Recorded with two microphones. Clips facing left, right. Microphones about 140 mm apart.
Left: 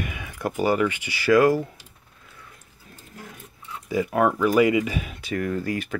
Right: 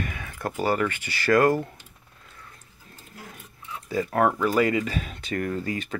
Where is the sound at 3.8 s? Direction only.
10° left (ahead or behind).